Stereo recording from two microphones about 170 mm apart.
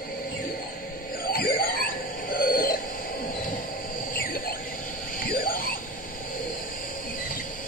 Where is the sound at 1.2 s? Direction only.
60° left (ahead or behind).